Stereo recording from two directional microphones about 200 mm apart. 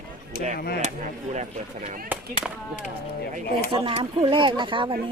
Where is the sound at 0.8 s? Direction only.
35° right (ahead or behind).